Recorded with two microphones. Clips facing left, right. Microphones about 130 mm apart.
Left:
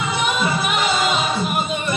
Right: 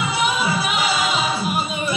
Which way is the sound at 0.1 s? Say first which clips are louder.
Left 1 dB; 5° right (ahead or behind).